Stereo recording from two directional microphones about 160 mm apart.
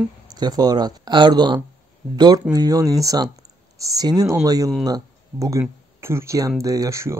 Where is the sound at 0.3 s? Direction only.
25° right (ahead or behind).